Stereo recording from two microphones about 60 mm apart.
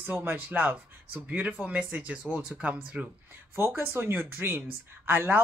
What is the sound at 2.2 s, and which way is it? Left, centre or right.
Speech, centre.